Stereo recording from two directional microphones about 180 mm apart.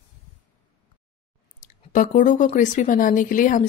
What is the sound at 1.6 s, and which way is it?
A woman's voice, 45° left (ahead or behind).